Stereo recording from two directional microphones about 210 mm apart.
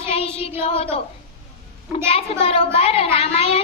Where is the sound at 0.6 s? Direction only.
25° left (ahead or behind).